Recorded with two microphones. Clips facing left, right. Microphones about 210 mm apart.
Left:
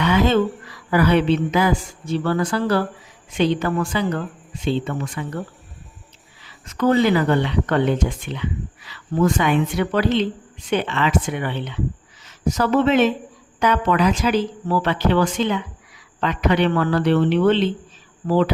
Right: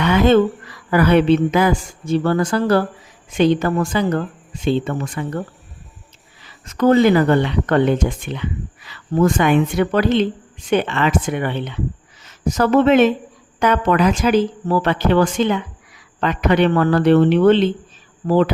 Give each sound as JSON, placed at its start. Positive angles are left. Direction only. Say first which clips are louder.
{"t": 0.0, "sound": "a sound", "louder": "right 4 dB", "side_deg": -55}
{"t": 0.9, "sound": "speech", "louder": "right 3 dB", "side_deg": -55}
{"t": 6.4, "sound": "speech", "louder": "right 4 dB", "side_deg": -45}